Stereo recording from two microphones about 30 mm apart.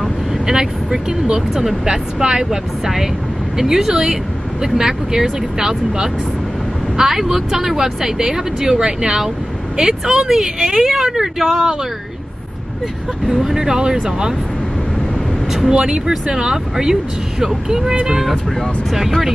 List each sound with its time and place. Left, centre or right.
0.5 s speech: right
2.8 s a woman's voice: centre
13.3 s speech: centre
15.7 s a woman's voice: right
18.9 s speech: centre